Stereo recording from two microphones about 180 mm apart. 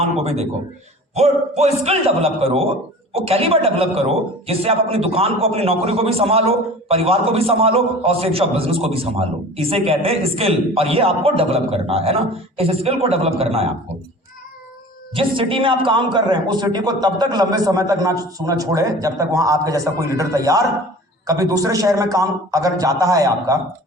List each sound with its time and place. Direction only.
0.0 s a man's voice: 35° right (ahead or behind)
15.1 s a man's voice: 30° right (ahead or behind)